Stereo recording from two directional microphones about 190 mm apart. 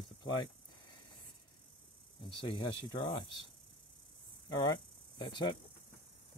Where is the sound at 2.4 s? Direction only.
25° left (ahead or behind).